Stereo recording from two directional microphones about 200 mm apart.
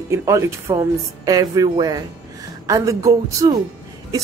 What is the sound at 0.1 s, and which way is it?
A woman's voice, 15° right (ahead or behind).